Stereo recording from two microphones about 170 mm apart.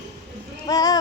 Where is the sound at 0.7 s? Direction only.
20° left (ahead or behind).